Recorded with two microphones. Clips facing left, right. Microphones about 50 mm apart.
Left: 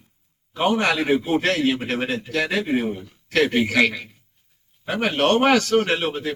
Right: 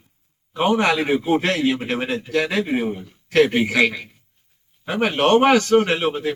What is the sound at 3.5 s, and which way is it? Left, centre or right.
A man's voice, centre.